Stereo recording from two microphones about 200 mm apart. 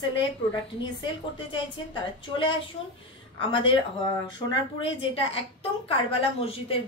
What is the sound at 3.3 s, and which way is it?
A woman's voice, 25° left (ahead or behind).